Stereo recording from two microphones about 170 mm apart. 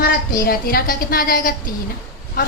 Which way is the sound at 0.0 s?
55° left (ahead or behind).